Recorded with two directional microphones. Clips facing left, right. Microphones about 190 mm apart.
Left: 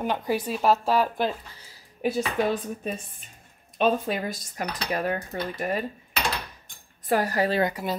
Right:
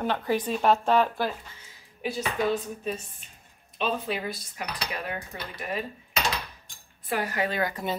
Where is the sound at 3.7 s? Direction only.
50° left (ahead or behind).